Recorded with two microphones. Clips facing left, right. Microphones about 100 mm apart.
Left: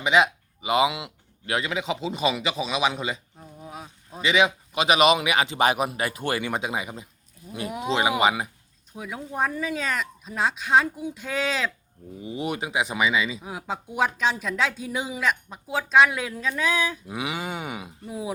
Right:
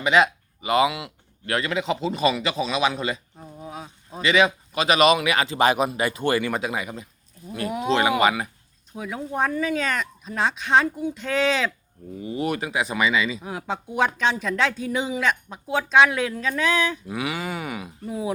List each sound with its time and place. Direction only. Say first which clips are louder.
0.0 s speech: right 1 dB; 15° left (ahead or behind)
3.7 s a sound: right 2 dB; centre (ahead or behind)
4.2 s speech: right 2 dB; 15° left (ahead or behind)
9.0 s speech: right 2 dB; centre (ahead or behind)
12.2 s speech: right 3 dB; 15° left (ahead or behind)
17.1 s a sound: right 2 dB; 20° left (ahead or behind)
18.0 s speech: right 4 dB; centre (ahead or behind)